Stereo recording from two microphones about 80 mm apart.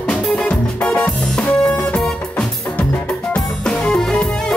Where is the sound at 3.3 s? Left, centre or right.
Centre.